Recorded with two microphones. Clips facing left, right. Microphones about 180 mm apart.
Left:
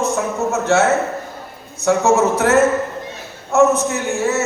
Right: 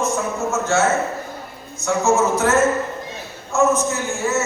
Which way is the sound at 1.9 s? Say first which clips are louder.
Left 3 dB; 65° left (ahead or behind).